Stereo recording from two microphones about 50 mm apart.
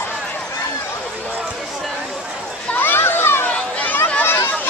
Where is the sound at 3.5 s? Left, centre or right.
Left.